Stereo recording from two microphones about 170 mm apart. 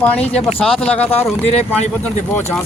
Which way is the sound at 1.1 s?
40° left (ahead or behind).